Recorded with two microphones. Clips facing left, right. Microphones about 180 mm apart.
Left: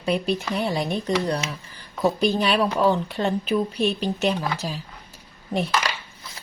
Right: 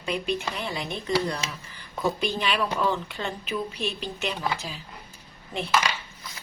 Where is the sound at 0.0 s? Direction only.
35° left (ahead or behind).